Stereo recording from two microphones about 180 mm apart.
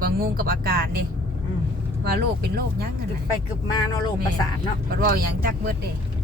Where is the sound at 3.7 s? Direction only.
20° left (ahead or behind).